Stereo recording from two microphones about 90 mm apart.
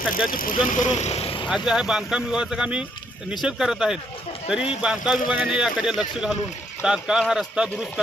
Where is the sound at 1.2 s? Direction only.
80° left.